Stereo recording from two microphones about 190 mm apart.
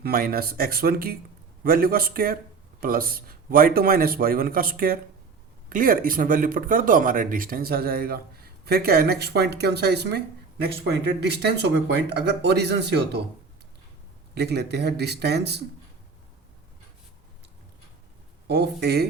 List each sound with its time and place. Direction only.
0.0 s speech: 50° right (ahead or behind)
14.3 s speech: 60° right (ahead or behind)
18.4 s speech: 60° right (ahead or behind)